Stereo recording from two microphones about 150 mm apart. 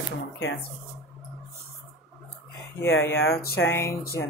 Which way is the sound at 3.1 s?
90° left.